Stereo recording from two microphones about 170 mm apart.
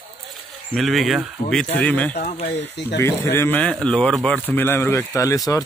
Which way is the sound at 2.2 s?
40° left (ahead or behind).